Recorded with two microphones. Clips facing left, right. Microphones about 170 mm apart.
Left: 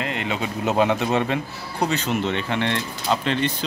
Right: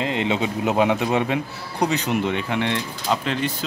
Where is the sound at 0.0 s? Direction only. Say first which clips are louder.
Right 4 dB; 25° right (ahead or behind).